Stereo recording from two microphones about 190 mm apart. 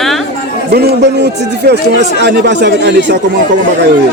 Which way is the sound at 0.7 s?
60° right (ahead or behind).